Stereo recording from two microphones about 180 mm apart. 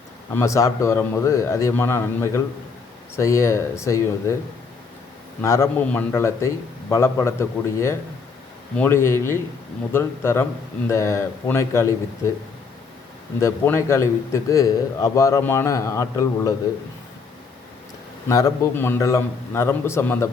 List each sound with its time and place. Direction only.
0.3 s a man's voice: 15° left (ahead or behind)
5.4 s a man's voice: 15° left (ahead or behind)
13.4 s a man's voice: 15° left (ahead or behind)
18.3 s a man's voice: 20° left (ahead or behind)